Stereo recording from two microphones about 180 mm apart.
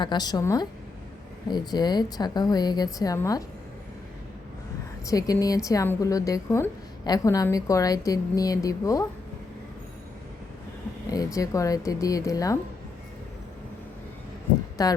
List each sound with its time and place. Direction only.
0.0 s a woman's voice: 25° left (ahead or behind)
5.0 s a woman's voice: 20° left (ahead or behind)
11.0 s a woman's voice: 20° left (ahead or behind)
14.8 s a woman's voice: 20° left (ahead or behind)